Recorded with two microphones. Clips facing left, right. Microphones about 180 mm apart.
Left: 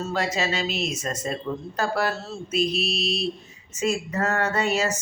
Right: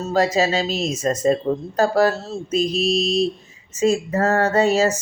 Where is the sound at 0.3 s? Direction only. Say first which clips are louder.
Right 7 dB; 35° right (ahead or behind).